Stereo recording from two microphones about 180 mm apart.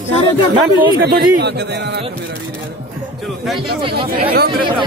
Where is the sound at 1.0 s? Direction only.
65° right (ahead or behind).